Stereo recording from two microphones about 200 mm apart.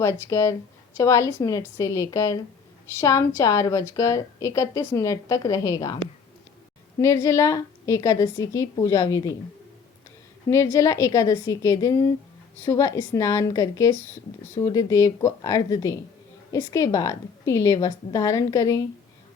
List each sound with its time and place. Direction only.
0.0 s a woman's voice: 15° left (ahead or behind)
7.0 s a woman's voice: 15° left (ahead or behind)
10.5 s a woman's voice: 15° left (ahead or behind)